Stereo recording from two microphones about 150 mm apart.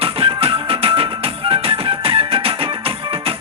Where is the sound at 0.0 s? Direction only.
40° right (ahead or behind).